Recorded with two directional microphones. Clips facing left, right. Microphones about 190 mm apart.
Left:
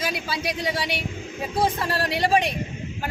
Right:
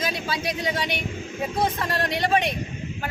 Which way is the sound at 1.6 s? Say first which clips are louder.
Left 2 dB; 5° left (ahead or behind).